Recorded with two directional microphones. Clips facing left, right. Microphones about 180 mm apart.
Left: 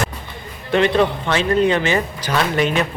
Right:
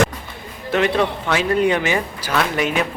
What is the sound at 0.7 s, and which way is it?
Speech, 5° right (ahead or behind).